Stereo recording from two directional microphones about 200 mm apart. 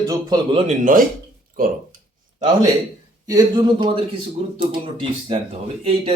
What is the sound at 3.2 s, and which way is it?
A man's voice, 20° right (ahead or behind).